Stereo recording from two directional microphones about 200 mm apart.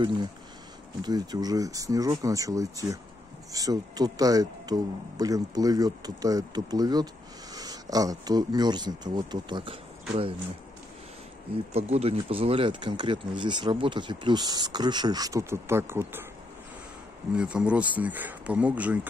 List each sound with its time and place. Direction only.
1.0 s speech: 20° right (ahead or behind)
11.7 s speech: 30° right (ahead or behind); by 16.3 s 10° right (ahead or behind)
17.4 s speech: 5° right (ahead or behind)